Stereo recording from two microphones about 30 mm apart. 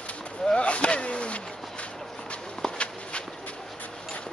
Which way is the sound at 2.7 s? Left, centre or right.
Left.